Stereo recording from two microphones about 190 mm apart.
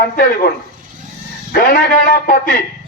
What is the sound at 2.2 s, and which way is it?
Speech, 50° left (ahead or behind).